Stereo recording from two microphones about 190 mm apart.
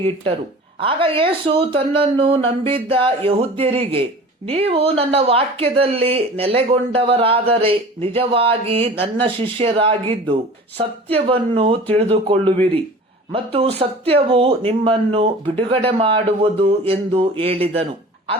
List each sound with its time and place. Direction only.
0.8 s speech: 30° right (ahead or behind)